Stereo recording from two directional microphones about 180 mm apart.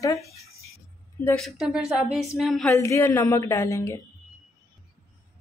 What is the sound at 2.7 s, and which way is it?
Speech, 15° left (ahead or behind).